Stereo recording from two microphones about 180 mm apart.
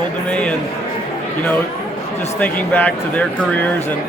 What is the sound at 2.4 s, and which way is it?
Speech, 10° left (ahead or behind).